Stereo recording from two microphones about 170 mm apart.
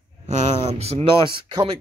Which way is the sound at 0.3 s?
40° right (ahead or behind).